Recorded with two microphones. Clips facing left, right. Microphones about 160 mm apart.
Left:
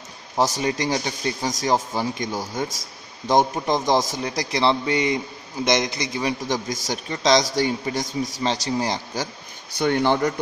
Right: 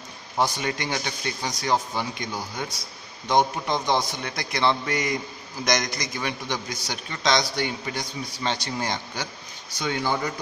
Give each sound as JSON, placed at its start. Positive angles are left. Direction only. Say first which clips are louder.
{"t": 0.4, "sound": "a man's voice", "louder": "left 4 dB", "side_deg": 35}
{"t": 9.8, "sound": "speech", "louder": "left 7 dB", "side_deg": 55}